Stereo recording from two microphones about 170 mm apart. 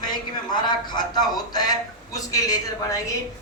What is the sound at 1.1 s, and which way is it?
A man's voice, 25° left (ahead or behind).